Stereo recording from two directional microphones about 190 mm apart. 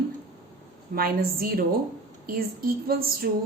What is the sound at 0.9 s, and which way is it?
A woman's voice, 50° right (ahead or behind).